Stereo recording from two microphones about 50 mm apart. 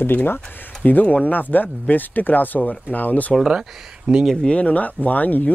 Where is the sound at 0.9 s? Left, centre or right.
Left.